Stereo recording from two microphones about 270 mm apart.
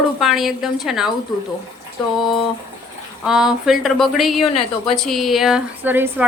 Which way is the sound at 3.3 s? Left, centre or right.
Centre.